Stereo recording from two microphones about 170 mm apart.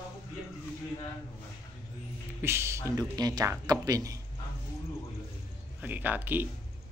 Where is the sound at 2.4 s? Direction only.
15° right (ahead or behind).